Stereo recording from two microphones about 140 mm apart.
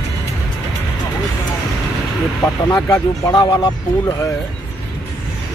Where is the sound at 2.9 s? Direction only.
25° left (ahead or behind).